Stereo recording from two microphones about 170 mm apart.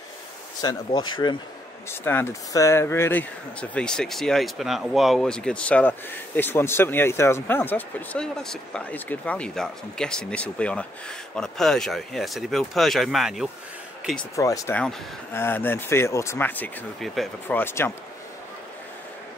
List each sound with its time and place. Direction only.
0.6 s speech: 25° left (ahead or behind)
1.9 s speech: 15° left (ahead or behind)
14.3 s speech: 20° left (ahead or behind); by 17.6 s centre (ahead or behind)
17.6 s speech: 15° left (ahead or behind)